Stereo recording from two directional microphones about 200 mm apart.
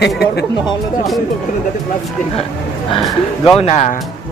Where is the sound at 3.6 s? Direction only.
35° left (ahead or behind).